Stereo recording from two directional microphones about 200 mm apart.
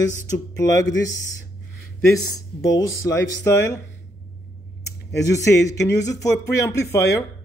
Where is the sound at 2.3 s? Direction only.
20° left (ahead or behind).